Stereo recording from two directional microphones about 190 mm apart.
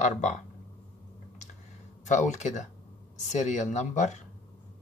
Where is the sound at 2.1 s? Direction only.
40° left (ahead or behind).